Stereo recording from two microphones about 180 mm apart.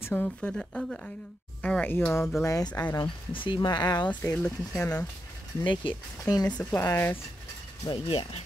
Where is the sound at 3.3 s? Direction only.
30° left (ahead or behind).